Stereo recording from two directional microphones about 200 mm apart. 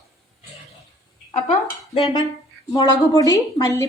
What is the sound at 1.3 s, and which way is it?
Speech, 30° left (ahead or behind).